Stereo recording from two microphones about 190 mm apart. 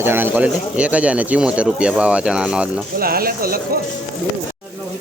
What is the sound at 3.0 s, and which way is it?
Speech, 50° right (ahead or behind).